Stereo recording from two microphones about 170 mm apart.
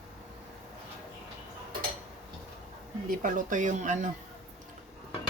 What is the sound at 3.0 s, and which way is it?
Speech, 50° right (ahead or behind).